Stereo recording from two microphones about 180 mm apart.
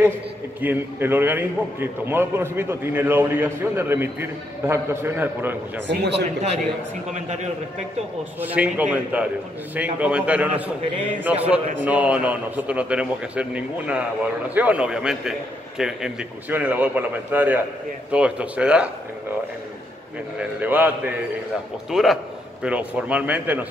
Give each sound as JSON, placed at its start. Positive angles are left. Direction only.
{"t": 0.6, "sound": "a man's voice", "side_deg": -10}
{"t": 5.9, "sound": "a man's voice", "side_deg": -70}
{"t": 8.4, "sound": "a man's voice", "side_deg": -10}
{"t": 20.3, "sound": "a man's voice", "side_deg": -10}